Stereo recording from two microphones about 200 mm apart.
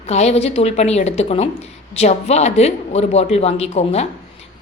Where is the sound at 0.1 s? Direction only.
35° left (ahead or behind).